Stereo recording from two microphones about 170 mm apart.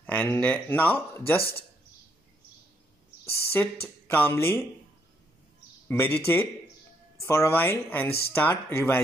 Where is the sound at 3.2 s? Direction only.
10° left (ahead or behind).